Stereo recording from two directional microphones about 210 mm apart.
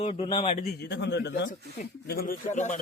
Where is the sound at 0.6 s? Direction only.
45° left (ahead or behind).